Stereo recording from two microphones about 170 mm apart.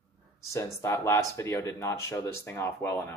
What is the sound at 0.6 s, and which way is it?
Speech, 15° left (ahead or behind).